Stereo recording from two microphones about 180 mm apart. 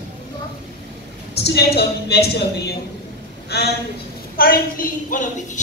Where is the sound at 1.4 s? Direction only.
65° left (ahead or behind).